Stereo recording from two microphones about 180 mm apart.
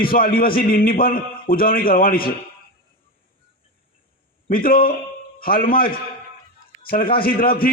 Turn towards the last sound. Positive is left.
turn(degrees=55)  # may be behind; listen again after turning